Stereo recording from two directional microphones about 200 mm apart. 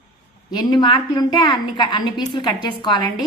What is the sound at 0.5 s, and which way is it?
A woman's voice, 20° left (ahead or behind).